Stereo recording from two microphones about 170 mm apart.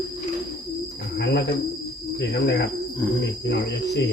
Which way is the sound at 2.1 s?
75° left (ahead or behind).